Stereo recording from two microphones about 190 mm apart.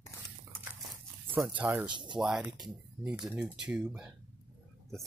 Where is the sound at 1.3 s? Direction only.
10° right (ahead or behind).